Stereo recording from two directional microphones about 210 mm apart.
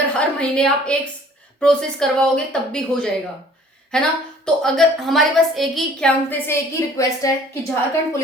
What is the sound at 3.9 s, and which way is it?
A woman's voice, 5° left (ahead or behind).